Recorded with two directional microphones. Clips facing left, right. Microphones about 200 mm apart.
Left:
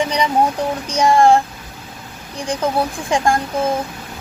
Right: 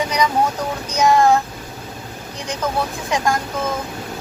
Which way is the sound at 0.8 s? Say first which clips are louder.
Left 2 dB; 30° left (ahead or behind).